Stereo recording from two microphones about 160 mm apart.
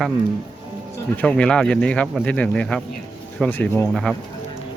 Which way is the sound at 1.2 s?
5° left (ahead or behind).